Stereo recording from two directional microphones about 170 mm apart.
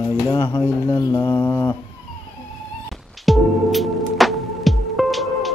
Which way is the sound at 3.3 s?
Centre (ahead or behind).